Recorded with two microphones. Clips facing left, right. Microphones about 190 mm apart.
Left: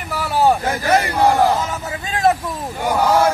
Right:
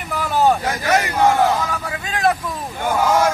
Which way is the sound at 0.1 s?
10° left (ahead or behind).